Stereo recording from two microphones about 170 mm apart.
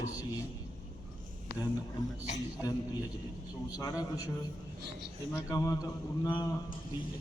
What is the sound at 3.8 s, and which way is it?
Speech, 20° left (ahead or behind).